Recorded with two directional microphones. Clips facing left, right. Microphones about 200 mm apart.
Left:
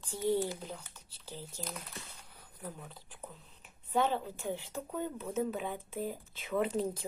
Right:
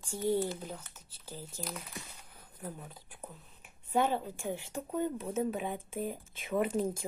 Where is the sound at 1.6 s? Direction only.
10° right (ahead or behind).